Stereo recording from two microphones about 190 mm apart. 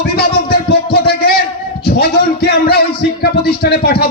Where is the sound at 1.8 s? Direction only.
55° left (ahead or behind).